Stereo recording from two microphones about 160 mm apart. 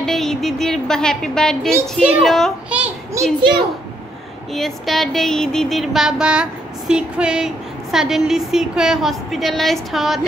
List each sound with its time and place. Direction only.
0.0 s music: 5° left (ahead or behind)
2.0 s a child's voice: 5° right (ahead or behind)
3.3 s a child's voice: 30° right (ahead or behind)
4.6 s music: centre (ahead or behind)